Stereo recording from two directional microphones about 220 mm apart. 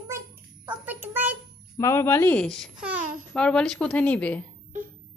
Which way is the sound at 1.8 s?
15° left (ahead or behind).